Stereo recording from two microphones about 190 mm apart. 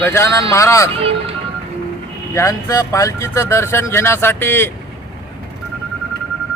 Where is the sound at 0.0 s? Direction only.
10° left (ahead or behind).